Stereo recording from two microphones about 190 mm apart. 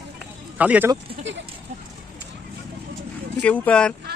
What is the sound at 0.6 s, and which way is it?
Speech, 10° right (ahead or behind).